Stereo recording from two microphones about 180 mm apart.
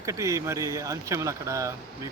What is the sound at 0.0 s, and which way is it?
Speech, 15° right (ahead or behind).